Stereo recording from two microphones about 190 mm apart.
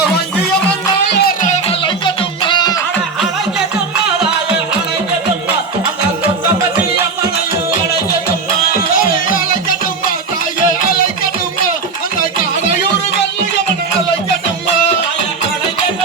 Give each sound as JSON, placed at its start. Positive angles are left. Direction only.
{"t": 1.1, "sound": "music", "side_deg": 55}
{"t": 1.5, "sound": "music", "side_deg": 30}